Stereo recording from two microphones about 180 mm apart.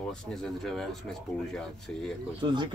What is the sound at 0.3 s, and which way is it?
Speech, centre (ahead or behind).